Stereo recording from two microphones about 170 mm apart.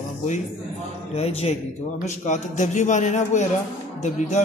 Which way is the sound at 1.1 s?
40° left (ahead or behind).